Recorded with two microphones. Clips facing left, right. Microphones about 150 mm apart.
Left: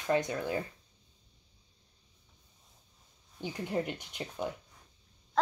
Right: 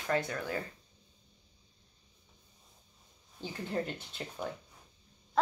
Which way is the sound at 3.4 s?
15° left (ahead or behind).